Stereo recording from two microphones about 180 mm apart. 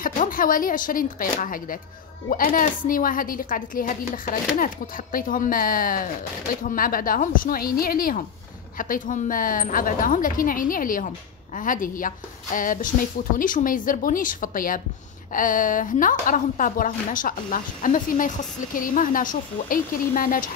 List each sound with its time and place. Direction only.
0.0 s speech: 50° left (ahead or behind)